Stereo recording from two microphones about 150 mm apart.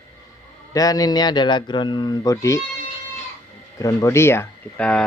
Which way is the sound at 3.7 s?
20° left (ahead or behind).